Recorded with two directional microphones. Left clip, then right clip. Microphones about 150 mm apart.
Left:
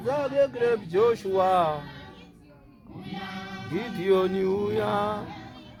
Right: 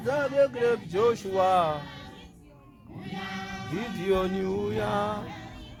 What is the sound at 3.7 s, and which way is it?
Music, 45° left (ahead or behind).